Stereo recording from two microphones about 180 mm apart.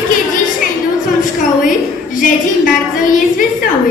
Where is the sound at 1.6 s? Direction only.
45° left (ahead or behind).